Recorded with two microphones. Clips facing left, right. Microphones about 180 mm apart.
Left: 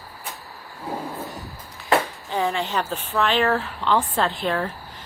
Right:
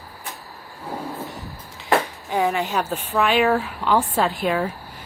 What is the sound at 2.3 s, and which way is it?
Speech, 10° right (ahead or behind).